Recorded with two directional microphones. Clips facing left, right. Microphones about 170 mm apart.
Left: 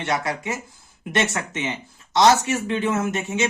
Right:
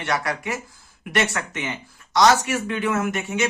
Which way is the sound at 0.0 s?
20° left (ahead or behind).